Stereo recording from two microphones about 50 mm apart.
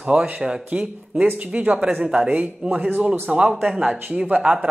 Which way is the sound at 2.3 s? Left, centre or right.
Right.